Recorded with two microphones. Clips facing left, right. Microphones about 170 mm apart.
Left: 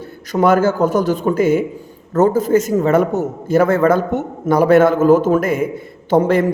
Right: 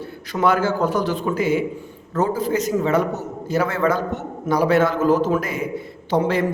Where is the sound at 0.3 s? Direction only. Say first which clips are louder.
Left 5 dB; 45° left (ahead or behind).